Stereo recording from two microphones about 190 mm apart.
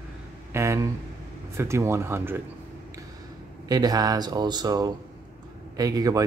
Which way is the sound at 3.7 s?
20° right (ahead or behind).